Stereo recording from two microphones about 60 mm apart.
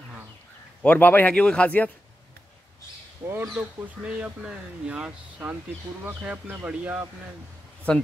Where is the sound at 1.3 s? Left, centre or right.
Centre.